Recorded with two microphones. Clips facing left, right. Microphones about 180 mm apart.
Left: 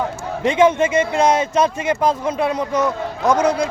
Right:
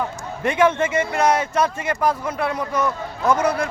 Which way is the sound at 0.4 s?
20° left (ahead or behind).